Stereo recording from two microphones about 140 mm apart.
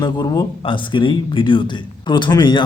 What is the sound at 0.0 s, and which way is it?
Speech, 30° left (ahead or behind).